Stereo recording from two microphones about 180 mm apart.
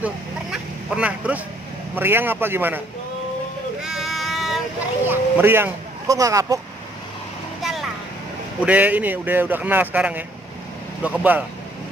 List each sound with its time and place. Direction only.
0.0 s vehicle: 5° right (ahead or behind)
2.0 s speech: 10° right (ahead or behind)
3.8 s a sound: centre (ahead or behind)
5.0 s speech: 10° right (ahead or behind)
7.6 s vehicle: centre (ahead or behind)
8.6 s speech: 10° right (ahead or behind)